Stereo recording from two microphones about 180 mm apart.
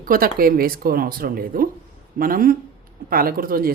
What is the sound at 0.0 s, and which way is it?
Speech, 50° right (ahead or behind).